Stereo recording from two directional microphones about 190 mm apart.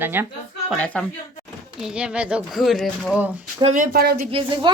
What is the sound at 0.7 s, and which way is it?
Speech, 5° left (ahead or behind).